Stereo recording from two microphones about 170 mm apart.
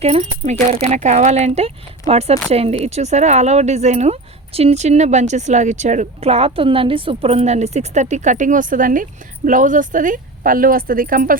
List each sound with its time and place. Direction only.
0.0 s speech: 40° right (ahead or behind)